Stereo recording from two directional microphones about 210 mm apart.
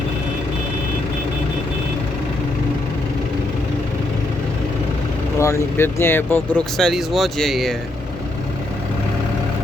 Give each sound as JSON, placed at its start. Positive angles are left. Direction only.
{"t": 5.4, "sound": "speech", "side_deg": 15}